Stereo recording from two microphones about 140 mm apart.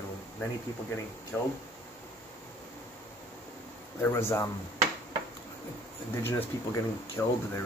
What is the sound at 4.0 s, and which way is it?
Speech, 20° left (ahead or behind).